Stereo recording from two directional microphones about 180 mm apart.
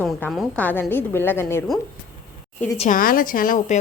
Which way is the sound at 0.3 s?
5° left (ahead or behind).